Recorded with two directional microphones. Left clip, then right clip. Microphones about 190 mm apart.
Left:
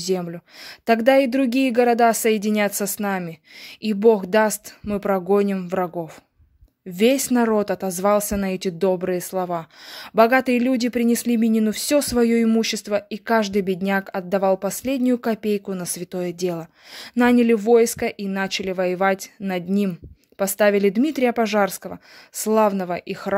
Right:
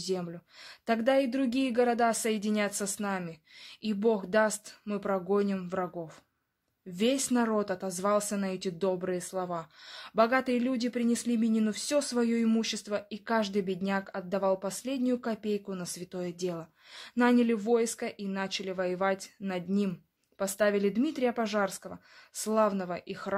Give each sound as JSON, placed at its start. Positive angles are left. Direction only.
{"t": 0.0, "sound": "speech", "side_deg": 35}